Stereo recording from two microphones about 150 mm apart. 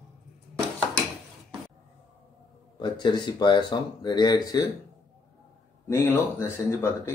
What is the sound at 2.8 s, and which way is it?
Speech, 30° left (ahead or behind).